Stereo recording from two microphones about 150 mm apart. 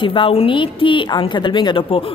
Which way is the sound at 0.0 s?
35° left (ahead or behind).